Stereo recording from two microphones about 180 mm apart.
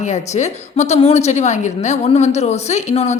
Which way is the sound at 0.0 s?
40° left (ahead or behind).